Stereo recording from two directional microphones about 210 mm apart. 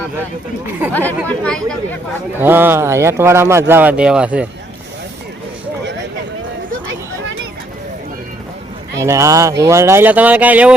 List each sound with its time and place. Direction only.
0.9 s speech: 5° left (ahead or behind)
2.4 s speech: 10° right (ahead or behind)
9.0 s speech: 15° right (ahead or behind)